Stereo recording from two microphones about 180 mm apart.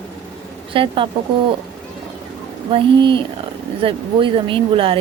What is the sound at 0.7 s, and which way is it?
Speech, 30° right (ahead or behind).